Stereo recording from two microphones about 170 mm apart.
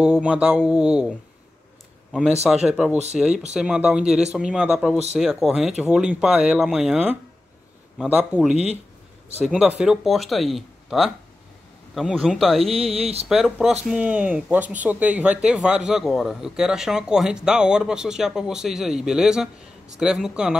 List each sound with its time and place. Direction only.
0.0 s speech: 5° right (ahead or behind)
2.5 s speech: 5° right (ahead or behind)
12.7 s speech: 35° right (ahead or behind)
13.3 s speech: centre (ahead or behind)